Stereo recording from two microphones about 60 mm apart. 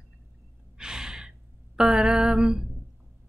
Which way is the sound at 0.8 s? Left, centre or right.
Centre.